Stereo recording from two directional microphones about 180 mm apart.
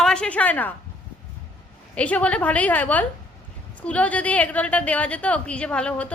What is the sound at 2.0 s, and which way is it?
A woman's voice, 5° left (ahead or behind).